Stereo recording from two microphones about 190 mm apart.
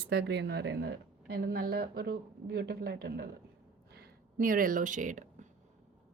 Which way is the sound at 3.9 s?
50° right (ahead or behind).